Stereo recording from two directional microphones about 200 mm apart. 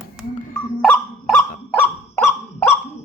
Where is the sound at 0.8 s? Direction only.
5° left (ahead or behind).